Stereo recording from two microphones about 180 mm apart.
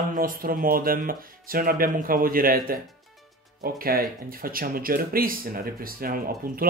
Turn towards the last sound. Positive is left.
turn(degrees=-55)  # may be behind; listen again after turning